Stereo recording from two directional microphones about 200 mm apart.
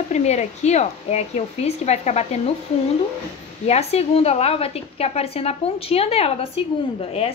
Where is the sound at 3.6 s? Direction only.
30° left (ahead or behind).